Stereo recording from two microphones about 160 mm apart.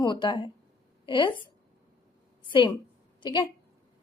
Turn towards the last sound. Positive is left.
turn(degrees=30)  # may be behind; listen again after turning